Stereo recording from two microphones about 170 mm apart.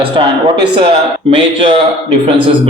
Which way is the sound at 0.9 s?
30° right (ahead or behind).